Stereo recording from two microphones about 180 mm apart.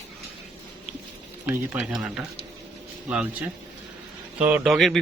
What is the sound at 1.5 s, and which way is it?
A man's voice, 5° right (ahead or behind).